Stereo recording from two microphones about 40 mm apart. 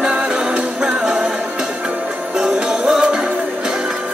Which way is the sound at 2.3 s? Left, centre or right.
Centre.